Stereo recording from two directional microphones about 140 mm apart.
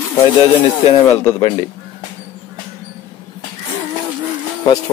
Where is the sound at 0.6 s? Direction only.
35° left (ahead or behind).